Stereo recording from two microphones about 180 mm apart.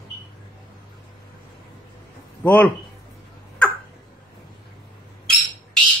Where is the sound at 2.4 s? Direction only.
10° left (ahead or behind).